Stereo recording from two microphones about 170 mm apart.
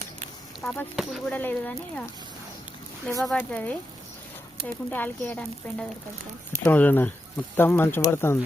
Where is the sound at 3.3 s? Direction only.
10° left (ahead or behind).